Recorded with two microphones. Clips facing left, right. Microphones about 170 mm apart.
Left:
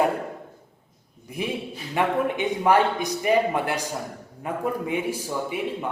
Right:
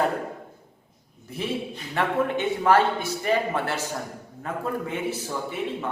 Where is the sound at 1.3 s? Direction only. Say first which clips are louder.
Even; 15° left (ahead or behind).